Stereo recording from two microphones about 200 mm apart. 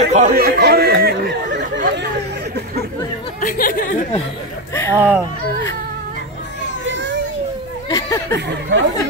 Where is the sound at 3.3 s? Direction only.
45° left (ahead or behind).